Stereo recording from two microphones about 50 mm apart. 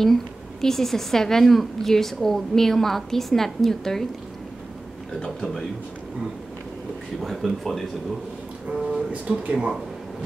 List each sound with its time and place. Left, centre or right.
0.0 s a woman's voice: centre
5.2 s a woman's voice: centre
7.2 s speech: centre
8.9 s speech: right